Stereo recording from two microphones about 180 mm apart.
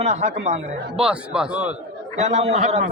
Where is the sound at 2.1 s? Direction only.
35° right (ahead or behind).